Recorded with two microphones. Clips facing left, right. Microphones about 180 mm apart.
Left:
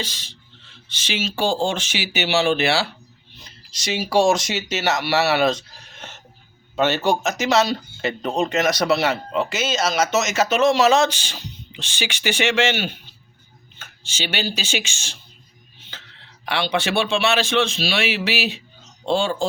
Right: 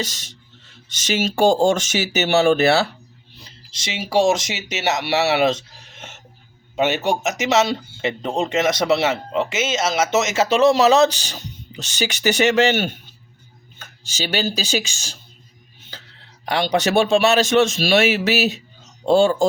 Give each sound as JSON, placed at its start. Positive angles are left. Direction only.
{"t": 0.0, "sound": "speech", "side_deg": -45}
{"t": 3.3, "sound": "a man's voice", "side_deg": -30}